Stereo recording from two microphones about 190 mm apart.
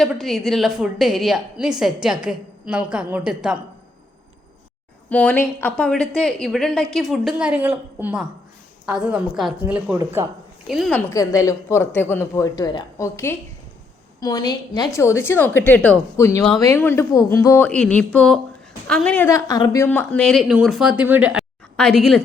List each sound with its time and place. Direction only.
0.0 s a woman's voice: centre (ahead or behind)
5.0 s a woman's voice: 10° left (ahead or behind)
11.1 s a woman's voice: 20° left (ahead or behind); by 21.4 s 5° right (ahead or behind)
21.8 s a woman's voice: 5° left (ahead or behind)